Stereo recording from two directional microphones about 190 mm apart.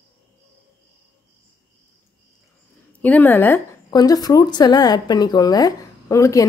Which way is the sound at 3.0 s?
10° left (ahead or behind).